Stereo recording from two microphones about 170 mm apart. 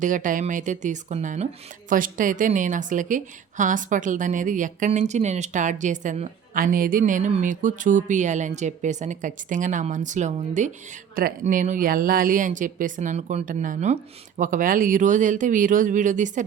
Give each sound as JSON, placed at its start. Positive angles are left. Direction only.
{"t": 0.0, "sound": "a woman's voice", "side_deg": -50}
{"t": 11.1, "sound": "a woman's voice", "side_deg": -55}